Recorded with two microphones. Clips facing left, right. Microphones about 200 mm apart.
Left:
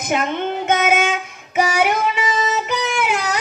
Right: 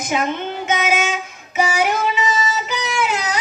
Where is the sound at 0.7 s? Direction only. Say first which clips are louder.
Left 2 dB; 55° left (ahead or behind).